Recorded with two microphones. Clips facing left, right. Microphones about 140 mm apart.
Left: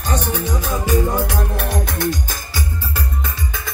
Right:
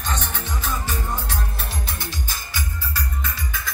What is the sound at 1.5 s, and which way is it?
Music, 65° left (ahead or behind).